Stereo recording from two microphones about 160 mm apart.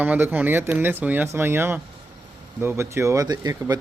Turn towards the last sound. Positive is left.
turn(degrees=-25)  # may be behind; listen again after turning